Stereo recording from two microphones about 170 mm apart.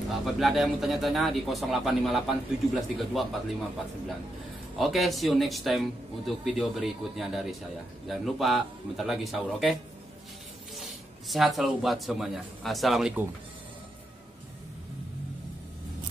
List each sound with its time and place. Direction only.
0.2 s speech: centre (ahead or behind)
4.7 s speech: centre (ahead or behind)
10.8 s speech: centre (ahead or behind)